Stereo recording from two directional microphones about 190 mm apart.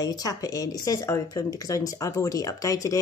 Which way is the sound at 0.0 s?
20° left (ahead or behind).